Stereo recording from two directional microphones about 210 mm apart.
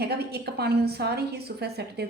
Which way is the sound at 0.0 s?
50° right (ahead or behind).